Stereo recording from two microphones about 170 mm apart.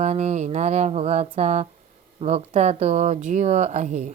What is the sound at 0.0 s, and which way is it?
Speech, 40° right (ahead or behind).